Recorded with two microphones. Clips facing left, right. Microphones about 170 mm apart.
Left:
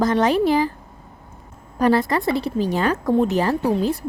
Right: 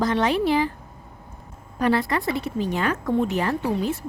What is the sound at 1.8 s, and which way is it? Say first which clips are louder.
A woman's voice: left 4 dB; 40° left (ahead or behind).